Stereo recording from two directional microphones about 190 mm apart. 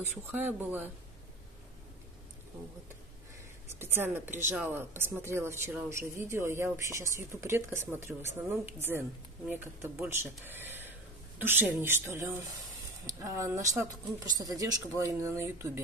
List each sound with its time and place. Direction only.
0.2 s speech: 10° right (ahead or behind)
3.8 s speech: 10° right (ahead or behind)